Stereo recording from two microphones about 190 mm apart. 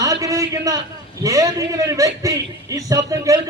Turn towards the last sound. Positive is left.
turn(degrees=-15)  # may be behind; listen again after turning